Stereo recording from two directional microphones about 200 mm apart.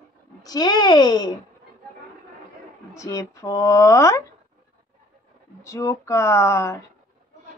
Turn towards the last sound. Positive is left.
turn(degrees=15)  # may be behind; listen again after turning